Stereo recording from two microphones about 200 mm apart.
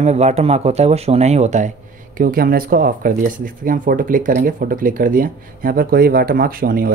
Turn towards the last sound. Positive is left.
turn(degrees=-45)  # may be behind; listen again after turning